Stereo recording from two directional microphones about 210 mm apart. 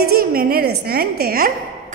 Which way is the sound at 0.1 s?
45° right (ahead or behind).